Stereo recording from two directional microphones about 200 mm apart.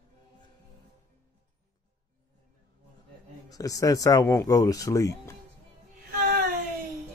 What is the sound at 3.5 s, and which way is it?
Speech, 15° left (ahead or behind).